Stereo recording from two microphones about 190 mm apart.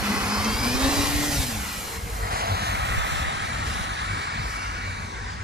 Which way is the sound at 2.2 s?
55° right (ahead or behind).